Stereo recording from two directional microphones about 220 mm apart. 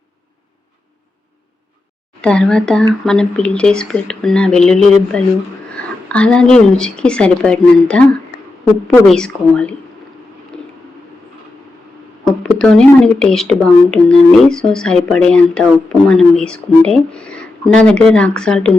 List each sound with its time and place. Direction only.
2.2 s speech: 5° left (ahead or behind)
8.3 s a sound: 50° left (ahead or behind)
8.9 s speech: 5° left (ahead or behind)
12.4 s speech: 5° left (ahead or behind)